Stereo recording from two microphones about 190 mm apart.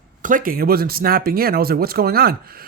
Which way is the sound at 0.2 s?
45° right (ahead or behind).